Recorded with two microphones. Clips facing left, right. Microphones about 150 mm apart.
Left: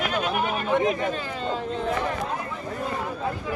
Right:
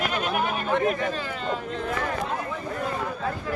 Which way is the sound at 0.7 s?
15° left (ahead or behind).